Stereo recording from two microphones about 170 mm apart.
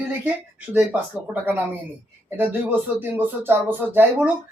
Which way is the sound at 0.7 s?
10° right (ahead or behind).